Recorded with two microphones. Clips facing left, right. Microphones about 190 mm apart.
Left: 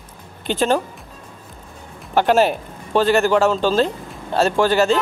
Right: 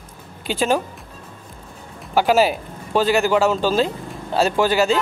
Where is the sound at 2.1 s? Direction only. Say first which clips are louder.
Left 1 dB; 5° right (ahead or behind).